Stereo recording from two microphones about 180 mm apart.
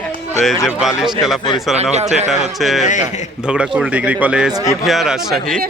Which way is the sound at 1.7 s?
40° right (ahead or behind).